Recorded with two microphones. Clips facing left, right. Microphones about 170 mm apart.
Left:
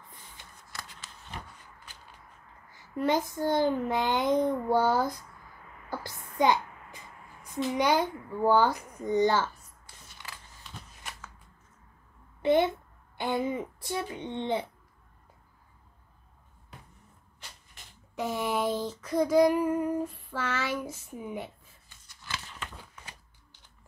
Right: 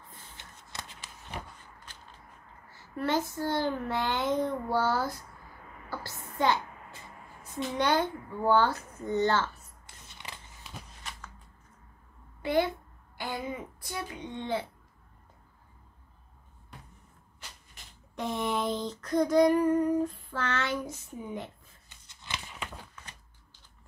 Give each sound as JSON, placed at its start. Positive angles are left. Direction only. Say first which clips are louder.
{"t": 0.4, "sound": "shuffling cards", "louder": "right 1 dB", "side_deg": -25}
{"t": 2.7, "sound": "child singing", "louder": "left 2 dB", "side_deg": 15}
{"t": 5.9, "sound": "a sound", "louder": "left 2 dB", "side_deg": 15}
{"t": 7.7, "sound": "child singing", "louder": "left 1 dB", "side_deg": 10}
{"t": 9.8, "sound": "creak", "louder": "right 1 dB", "side_deg": -20}
{"t": 12.4, "sound": "a child's voice", "louder": "left 4 dB", "side_deg": 20}
{"t": 18.1, "sound": "child singing", "louder": "left 1 dB", "side_deg": 5}
{"t": 21.8, "sound": "a sound", "louder": "even", "side_deg": -20}